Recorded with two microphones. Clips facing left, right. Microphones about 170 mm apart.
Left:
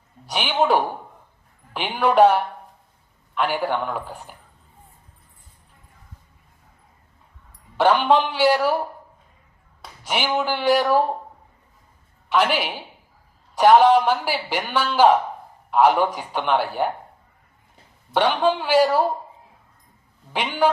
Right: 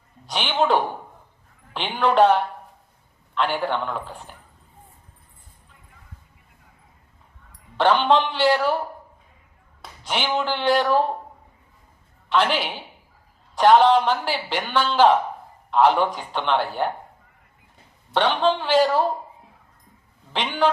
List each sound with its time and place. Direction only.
0.3 s a man's voice: 10° left (ahead or behind)
7.8 s a man's voice: 10° left (ahead or behind)
10.0 s a man's voice: 10° left (ahead or behind)
12.3 s a man's voice: 10° left (ahead or behind)
18.1 s a man's voice: 10° left (ahead or behind)
20.3 s a man's voice: 10° left (ahead or behind)